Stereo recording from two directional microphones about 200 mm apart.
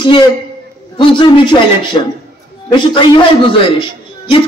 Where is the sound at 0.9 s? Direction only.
25° left (ahead or behind).